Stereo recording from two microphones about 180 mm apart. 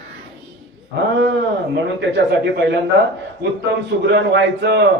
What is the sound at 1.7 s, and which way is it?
Speech, 70° right (ahead or behind).